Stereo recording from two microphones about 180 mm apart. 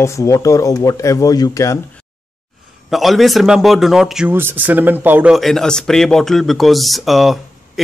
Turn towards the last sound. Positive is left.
turn(degrees=0)  # may be behind; listen again after turning